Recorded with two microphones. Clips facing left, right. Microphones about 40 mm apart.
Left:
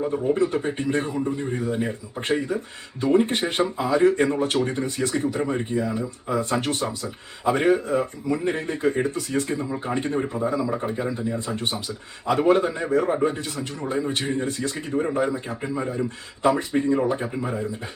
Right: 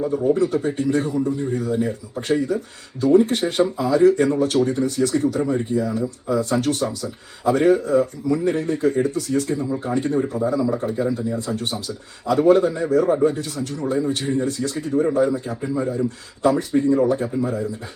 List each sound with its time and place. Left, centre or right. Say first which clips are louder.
0.3 s speech: right 3 dB; left
6.3 s speech: right 3 dB; left